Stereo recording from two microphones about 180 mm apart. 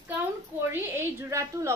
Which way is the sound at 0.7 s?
15° right (ahead or behind).